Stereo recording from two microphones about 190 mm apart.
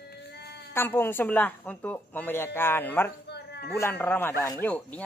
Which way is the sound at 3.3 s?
60° left (ahead or behind).